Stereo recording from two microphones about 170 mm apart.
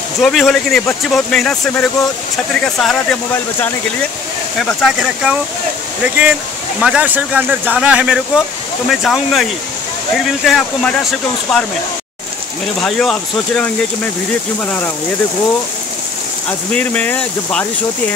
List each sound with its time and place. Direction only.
0.2 s speech: centre (ahead or behind)
4.6 s speech: centre (ahead or behind)
12.8 s speech: 5° left (ahead or behind)
16.4 s speech: 10° left (ahead or behind)